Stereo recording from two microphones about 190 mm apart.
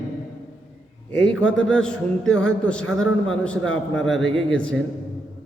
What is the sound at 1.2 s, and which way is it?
A man's voice, 5° left (ahead or behind).